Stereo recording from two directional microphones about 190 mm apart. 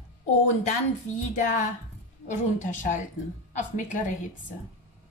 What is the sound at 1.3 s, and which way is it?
A woman's voice, 40° left (ahead or behind).